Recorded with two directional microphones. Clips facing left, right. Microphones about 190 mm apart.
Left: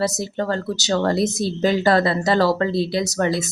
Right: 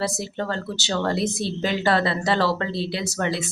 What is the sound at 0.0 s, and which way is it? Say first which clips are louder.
A woman's voice: left 4 dB; 40° left (ahead or behind).